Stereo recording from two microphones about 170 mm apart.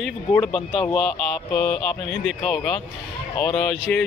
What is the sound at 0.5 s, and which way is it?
Speech, 25° left (ahead or behind).